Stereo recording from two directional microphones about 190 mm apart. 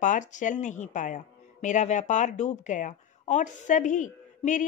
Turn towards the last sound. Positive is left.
turn(degrees=40)  # may be behind; listen again after turning